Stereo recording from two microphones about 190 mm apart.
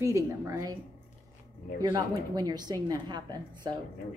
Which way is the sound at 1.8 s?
20° right (ahead or behind).